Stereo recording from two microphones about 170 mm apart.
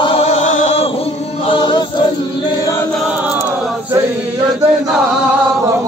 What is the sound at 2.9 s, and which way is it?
Chant, 5° right (ahead or behind).